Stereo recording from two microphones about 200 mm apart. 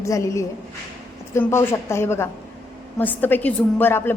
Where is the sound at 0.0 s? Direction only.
15° left (ahead or behind).